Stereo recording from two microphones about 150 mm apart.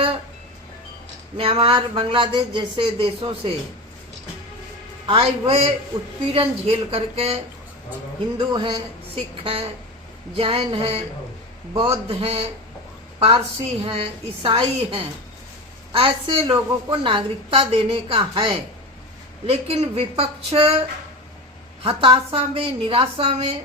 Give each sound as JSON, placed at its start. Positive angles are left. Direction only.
{"t": 1.4, "sound": "a woman's voice", "side_deg": -40}
{"t": 5.0, "sound": "a woman's voice", "side_deg": -35}
{"t": 8.4, "sound": "a woman's voice", "side_deg": -30}
{"t": 21.8, "sound": "a woman's voice", "side_deg": -40}